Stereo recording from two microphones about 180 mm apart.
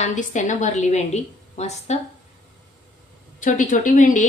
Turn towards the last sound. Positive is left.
turn(degrees=45)  # may be behind; listen again after turning